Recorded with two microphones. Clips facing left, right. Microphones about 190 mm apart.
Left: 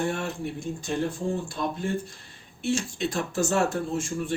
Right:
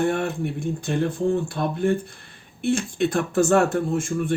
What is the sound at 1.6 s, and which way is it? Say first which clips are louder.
A man's voice: right 6 dB; 60° right (ahead or behind).